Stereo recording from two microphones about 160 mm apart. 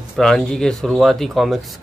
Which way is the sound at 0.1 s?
Centre (ahead or behind).